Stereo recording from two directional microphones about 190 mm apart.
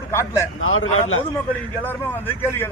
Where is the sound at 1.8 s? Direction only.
10° left (ahead or behind).